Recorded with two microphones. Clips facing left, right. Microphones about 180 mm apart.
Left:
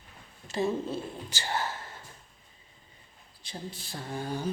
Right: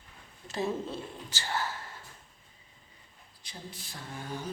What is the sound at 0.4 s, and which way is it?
Speech, centre (ahead or behind).